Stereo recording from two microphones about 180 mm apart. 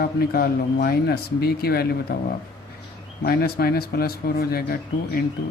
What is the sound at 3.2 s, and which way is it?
Speech, 60° left (ahead or behind).